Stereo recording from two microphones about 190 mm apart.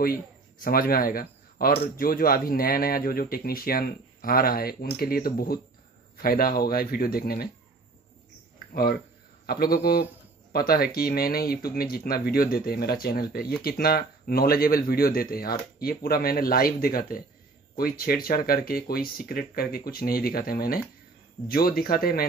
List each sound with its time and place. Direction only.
0.6 s a man's voice: 50° left (ahead or behind)
9.5 s a man's voice: 55° left (ahead or behind)